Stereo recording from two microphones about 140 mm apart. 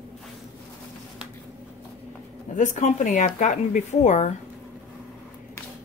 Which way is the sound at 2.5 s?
65° left (ahead or behind).